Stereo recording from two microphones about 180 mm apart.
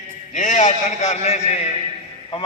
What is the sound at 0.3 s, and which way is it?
A man's voice, 45° left (ahead or behind).